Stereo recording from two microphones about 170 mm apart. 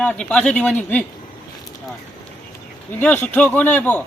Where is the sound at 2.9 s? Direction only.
10° left (ahead or behind).